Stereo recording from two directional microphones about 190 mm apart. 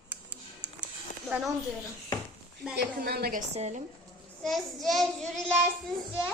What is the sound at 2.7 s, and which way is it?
Speech, 55° right (ahead or behind).